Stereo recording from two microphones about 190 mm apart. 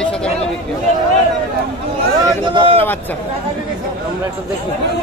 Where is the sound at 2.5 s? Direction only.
30° right (ahead or behind).